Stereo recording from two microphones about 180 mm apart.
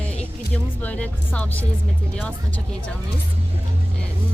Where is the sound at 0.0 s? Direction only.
5° left (ahead or behind).